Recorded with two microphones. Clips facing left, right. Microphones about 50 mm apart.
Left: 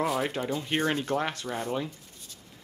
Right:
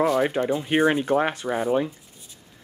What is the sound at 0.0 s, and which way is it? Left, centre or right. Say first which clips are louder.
Speech: right 7 dB; centre.